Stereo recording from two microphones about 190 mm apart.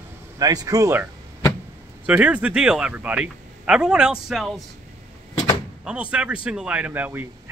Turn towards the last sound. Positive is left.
turn(degrees=-10)  # may be behind; listen again after turning